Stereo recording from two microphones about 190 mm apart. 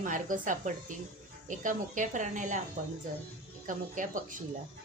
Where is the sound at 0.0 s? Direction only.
45° right (ahead or behind).